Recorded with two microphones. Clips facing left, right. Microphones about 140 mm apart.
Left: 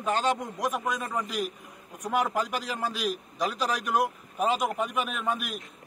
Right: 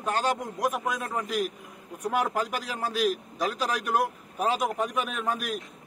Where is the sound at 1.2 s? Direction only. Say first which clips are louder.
Right 3 dB; 45° right (ahead or behind).